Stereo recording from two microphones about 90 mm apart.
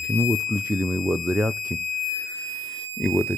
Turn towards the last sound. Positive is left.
turn(degrees=0)  # may be behind; listen again after turning